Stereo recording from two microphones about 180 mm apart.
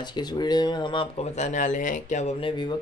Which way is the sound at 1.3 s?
40° left (ahead or behind).